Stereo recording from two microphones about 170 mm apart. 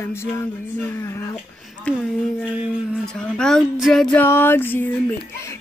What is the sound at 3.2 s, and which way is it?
Speech, 5° left (ahead or behind).